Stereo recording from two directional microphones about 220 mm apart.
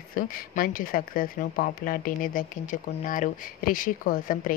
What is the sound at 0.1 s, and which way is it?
Speech, 40° left (ahead or behind).